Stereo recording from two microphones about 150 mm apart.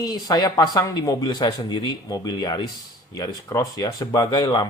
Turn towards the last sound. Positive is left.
turn(degrees=30)  # may be behind; listen again after turning